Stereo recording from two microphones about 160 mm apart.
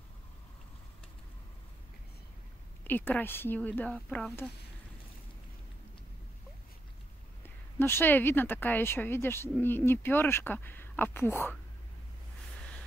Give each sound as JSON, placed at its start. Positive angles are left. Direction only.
{"t": 2.9, "sound": "speech", "side_deg": 10}
{"t": 7.4, "sound": "speech", "side_deg": 15}